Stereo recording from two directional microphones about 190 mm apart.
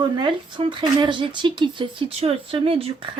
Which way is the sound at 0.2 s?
25° right (ahead or behind).